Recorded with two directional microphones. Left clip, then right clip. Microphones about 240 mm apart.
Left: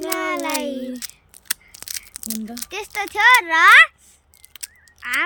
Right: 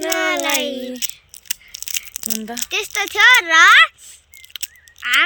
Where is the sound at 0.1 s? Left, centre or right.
Centre.